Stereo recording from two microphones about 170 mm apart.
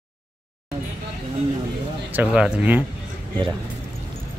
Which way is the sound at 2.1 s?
5° right (ahead or behind).